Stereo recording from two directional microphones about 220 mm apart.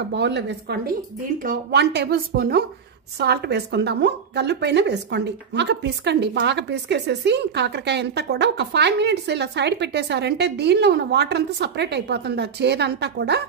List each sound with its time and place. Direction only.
0.1 s a woman's voice: 50° right (ahead or behind)